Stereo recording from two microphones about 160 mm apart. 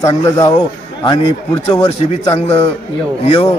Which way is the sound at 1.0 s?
35° left (ahead or behind).